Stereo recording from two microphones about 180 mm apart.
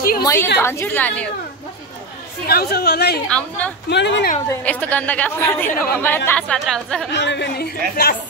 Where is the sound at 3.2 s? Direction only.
5° left (ahead or behind).